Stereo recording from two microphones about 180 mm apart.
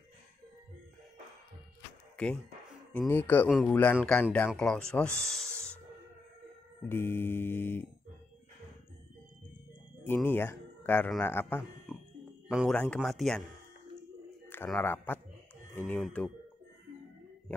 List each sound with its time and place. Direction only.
2.2 s speech: 5° left (ahead or behind)
2.9 s music: 10° left (ahead or behind)
4.6 s speech: 5° left (ahead or behind)
5.2 s owl: 5° left (ahead or behind)
6.9 s music: 10° left (ahead or behind)
10.0 s speech: 10° left (ahead or behind)
12.4 s speech: 5° right (ahead or behind)
14.5 s speech: 10° left (ahead or behind)